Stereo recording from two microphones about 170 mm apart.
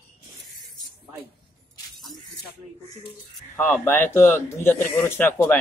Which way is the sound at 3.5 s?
10° left (ahead or behind).